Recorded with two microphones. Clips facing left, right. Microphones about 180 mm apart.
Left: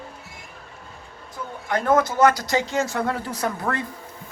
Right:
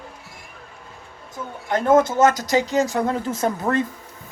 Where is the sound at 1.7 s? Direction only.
20° right (ahead or behind).